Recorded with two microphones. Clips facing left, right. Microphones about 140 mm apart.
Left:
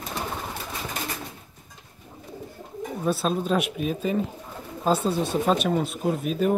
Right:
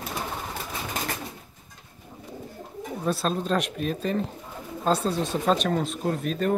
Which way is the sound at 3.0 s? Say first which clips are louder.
Left 1 dB; 5° left (ahead or behind).